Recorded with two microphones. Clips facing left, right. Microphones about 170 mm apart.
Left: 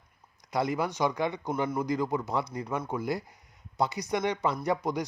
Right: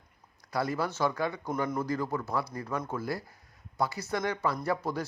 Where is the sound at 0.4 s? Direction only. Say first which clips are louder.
Left 2 dB; 20° left (ahead or behind).